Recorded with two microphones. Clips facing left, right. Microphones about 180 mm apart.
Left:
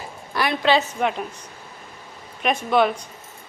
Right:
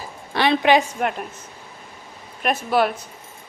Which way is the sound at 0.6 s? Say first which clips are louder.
Right 2 dB; 15° right (ahead or behind).